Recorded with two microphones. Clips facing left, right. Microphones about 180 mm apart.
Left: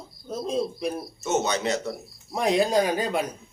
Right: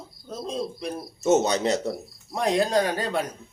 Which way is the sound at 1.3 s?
35° right (ahead or behind).